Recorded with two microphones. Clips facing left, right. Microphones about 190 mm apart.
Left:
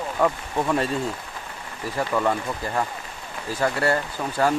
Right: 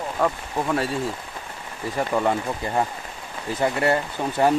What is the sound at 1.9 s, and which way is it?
Speech, 20° right (ahead or behind).